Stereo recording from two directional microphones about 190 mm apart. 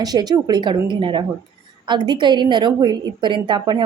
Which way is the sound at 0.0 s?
20° right (ahead or behind).